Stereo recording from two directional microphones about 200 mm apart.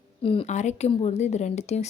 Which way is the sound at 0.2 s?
25° left (ahead or behind).